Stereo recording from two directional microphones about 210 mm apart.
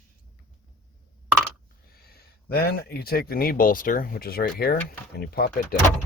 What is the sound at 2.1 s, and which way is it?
A man's voice, 45° left (ahead or behind).